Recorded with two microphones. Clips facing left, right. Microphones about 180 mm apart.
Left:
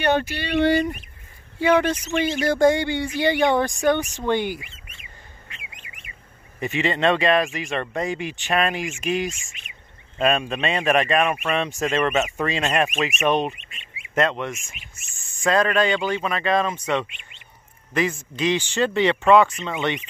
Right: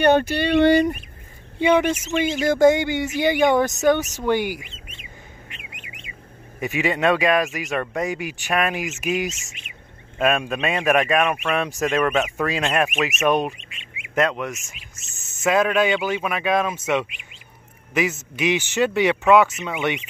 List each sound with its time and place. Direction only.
0.0 s speech: 50° right (ahead or behind)
1.6 s speech: 15° right (ahead or behind)
5.5 s bird: 20° right (ahead or behind)
6.6 s speech: 5° right (ahead or behind)
14.7 s insect: 20° right (ahead or behind)
15.4 s speech: 5° right (ahead or behind)